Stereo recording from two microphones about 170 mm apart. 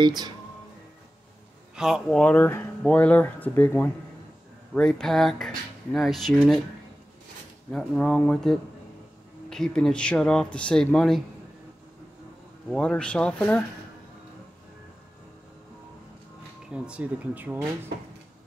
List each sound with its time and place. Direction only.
0.0 s speech: 25° right (ahead or behind)
1.8 s speech: centre (ahead or behind)
7.7 s speech: 5° left (ahead or behind)
12.6 s speech: 5° left (ahead or behind)
16.7 s speech: 5° right (ahead or behind)